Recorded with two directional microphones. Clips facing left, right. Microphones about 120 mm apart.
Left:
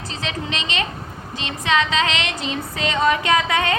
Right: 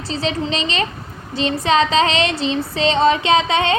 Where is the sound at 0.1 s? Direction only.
35° right (ahead or behind).